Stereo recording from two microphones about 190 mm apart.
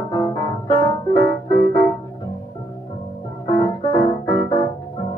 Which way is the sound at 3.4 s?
20° left (ahead or behind).